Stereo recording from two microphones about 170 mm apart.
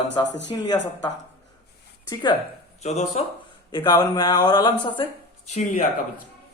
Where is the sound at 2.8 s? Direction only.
40° left (ahead or behind).